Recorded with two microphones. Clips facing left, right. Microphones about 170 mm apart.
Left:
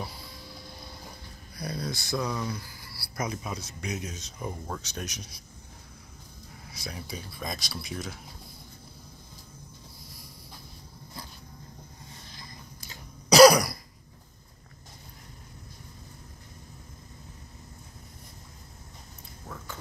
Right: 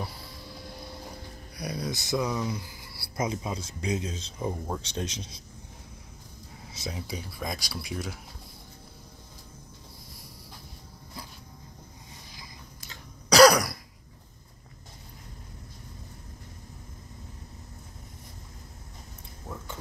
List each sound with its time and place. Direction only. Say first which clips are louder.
1.6 s speech: right 1 dB; 15° right (ahead or behind)
6.7 s speech: right 3 dB; 20° right (ahead or behind); by 8.2 s 5° right (ahead or behind)
12.9 s throat clearing: left 2 dB; 10° left (ahead or behind)